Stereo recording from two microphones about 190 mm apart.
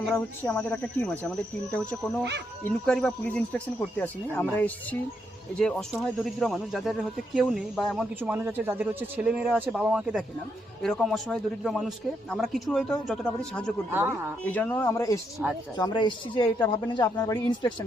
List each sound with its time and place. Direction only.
0.1 s a man's voice: 10° left (ahead or behind)
13.9 s speech: 10° right (ahead or behind)
14.4 s speech: 10° left (ahead or behind)
15.4 s a man's voice: 5° right (ahead or behind)
15.8 s speech: 25° left (ahead or behind)